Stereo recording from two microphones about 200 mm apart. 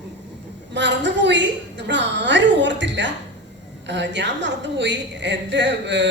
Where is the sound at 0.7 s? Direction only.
60° right (ahead or behind).